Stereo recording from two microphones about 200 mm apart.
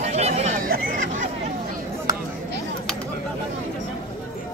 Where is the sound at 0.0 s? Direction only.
35° right (ahead or behind).